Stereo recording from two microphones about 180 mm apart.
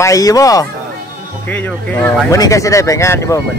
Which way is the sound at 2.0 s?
15° left (ahead or behind).